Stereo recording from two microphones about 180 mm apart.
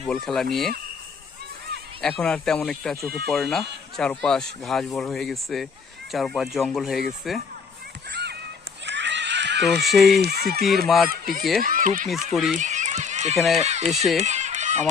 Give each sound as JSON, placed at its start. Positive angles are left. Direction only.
{"t": 0.3, "sound": "speech", "side_deg": 0}
{"t": 2.0, "sound": "speech", "side_deg": 5}
{"t": 8.9, "sound": "screaming", "side_deg": -75}
{"t": 9.8, "sound": "speech", "side_deg": 0}
{"t": 10.2, "sound": "speech", "side_deg": -60}
{"t": 10.8, "sound": "speech", "side_deg": 0}
{"t": 11.1, "sound": "speech", "side_deg": -55}
{"t": 12.0, "sound": "speech", "side_deg": 0}
{"t": 12.5, "sound": "a sound", "side_deg": -40}
{"t": 13.3, "sound": "speech", "side_deg": 0}
{"t": 13.6, "sound": "speech", "side_deg": -40}
{"t": 13.9, "sound": "speech", "side_deg": 0}
{"t": 14.2, "sound": "fowl", "side_deg": -40}